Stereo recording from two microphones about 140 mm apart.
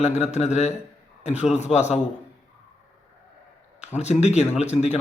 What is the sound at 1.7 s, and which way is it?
Speech, 55° left (ahead or behind).